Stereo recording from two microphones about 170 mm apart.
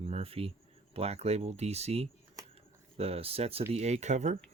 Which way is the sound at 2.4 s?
20° right (ahead or behind).